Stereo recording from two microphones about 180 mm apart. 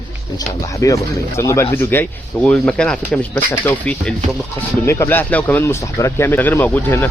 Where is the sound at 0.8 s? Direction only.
20° left (ahead or behind).